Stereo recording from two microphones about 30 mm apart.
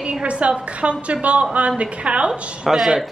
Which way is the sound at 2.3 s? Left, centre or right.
Centre.